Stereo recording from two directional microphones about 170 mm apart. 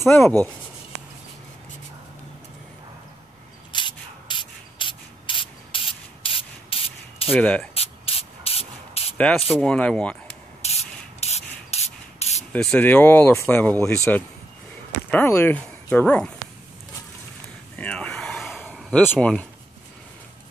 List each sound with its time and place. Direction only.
0.1 s speech: 10° left (ahead or behind)
3.7 s sanding: 30° left (ahead or behind)
7.2 s speech: 5° left (ahead or behind)
7.7 s spray: 35° left (ahead or behind)
9.5 s speech: 5° left (ahead or behind)
10.6 s sanding: 40° left (ahead or behind)
12.5 s speech: 10° left (ahead or behind)
17.7 s a sound: 5° left (ahead or behind)
18.8 s speech: 5° left (ahead or behind)